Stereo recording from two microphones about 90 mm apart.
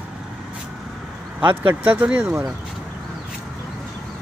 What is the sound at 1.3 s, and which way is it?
Speech, 15° right (ahead or behind).